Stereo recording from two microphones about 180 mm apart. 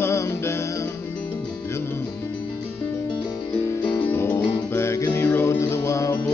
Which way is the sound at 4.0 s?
10° left (ahead or behind).